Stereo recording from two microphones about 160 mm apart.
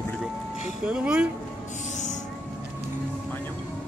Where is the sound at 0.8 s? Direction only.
5° right (ahead or behind).